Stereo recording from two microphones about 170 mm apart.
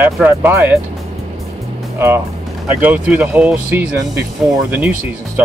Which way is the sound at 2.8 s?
10° right (ahead or behind).